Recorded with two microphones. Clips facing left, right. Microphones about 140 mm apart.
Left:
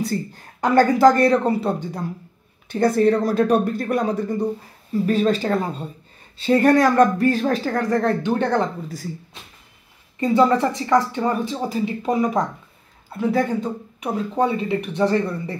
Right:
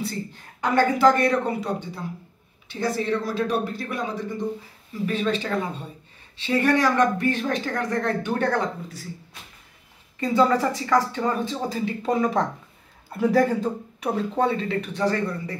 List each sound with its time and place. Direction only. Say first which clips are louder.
0.0 s speech: left 6 dB; 40° left (ahead or behind)
2.7 s speech: left 8 dB; 50° left (ahead or behind); by 8.6 s 25° left (ahead or behind)
10.2 s speech: left 3 dB; 20° left (ahead or behind)
13.2 s speech: right 1 dB; 5° right (ahead or behind)
14.0 s speech: left 2 dB; 10° left (ahead or behind)